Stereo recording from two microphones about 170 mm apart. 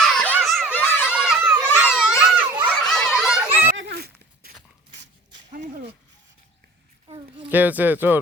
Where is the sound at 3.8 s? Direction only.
75° right (ahead or behind).